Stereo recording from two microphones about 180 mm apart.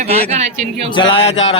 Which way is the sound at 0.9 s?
30° left (ahead or behind).